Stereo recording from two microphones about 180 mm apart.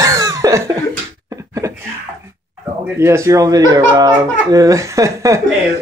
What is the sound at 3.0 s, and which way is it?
A man's voice, 15° right (ahead or behind).